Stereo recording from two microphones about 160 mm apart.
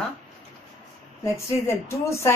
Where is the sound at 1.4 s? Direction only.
15° left (ahead or behind).